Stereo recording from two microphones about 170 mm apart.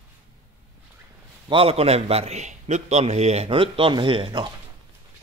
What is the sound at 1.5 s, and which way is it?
A man's voice, 35° right (ahead or behind).